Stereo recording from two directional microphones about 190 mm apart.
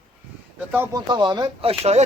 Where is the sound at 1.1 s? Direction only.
25° right (ahead or behind).